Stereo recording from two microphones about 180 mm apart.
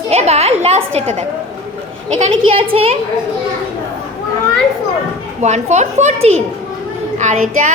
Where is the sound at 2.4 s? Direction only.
30° right (ahead or behind).